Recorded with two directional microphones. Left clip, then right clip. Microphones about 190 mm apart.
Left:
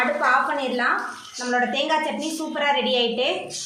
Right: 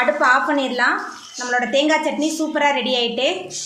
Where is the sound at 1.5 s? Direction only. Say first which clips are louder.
Right 4 dB; 35° right (ahead or behind).